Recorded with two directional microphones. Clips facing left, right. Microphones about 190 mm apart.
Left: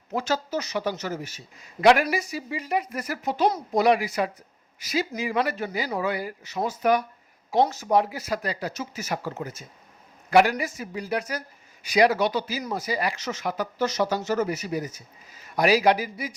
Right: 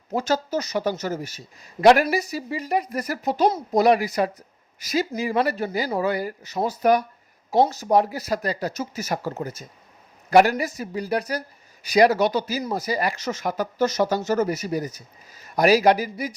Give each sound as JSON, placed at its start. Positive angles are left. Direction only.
{"t": 0.1, "sound": "speech", "side_deg": -40}